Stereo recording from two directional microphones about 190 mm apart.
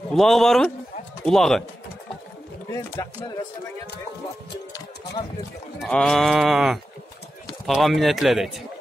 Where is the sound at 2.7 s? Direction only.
15° left (ahead or behind).